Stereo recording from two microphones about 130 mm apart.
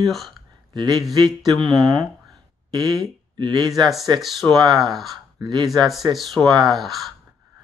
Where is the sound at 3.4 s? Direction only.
35° right (ahead or behind).